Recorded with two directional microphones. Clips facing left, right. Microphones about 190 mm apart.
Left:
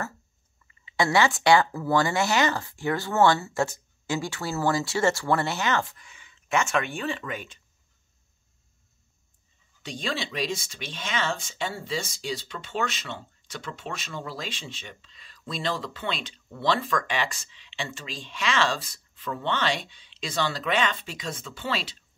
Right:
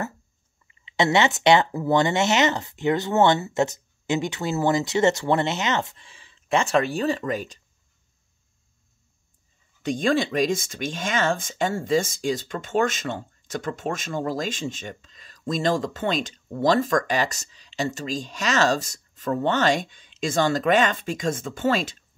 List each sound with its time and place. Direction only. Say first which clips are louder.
0.7 s speech: right 3 dB; 20° right (ahead or behind); by 7.6 s 40° right (ahead or behind)
9.8 s speech: right 10 dB; 50° right (ahead or behind)